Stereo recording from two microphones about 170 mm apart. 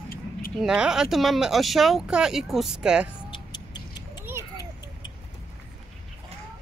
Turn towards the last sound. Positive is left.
turn(degrees=25)  # may be behind; listen again after turning